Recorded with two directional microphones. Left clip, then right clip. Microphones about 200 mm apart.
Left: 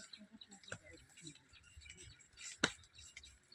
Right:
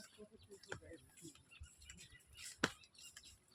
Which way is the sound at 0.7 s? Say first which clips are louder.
Right 1 dB; 55° left (ahead or behind).